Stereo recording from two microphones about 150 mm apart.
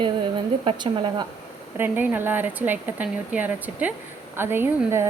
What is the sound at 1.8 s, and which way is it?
Speech, 15° right (ahead or behind).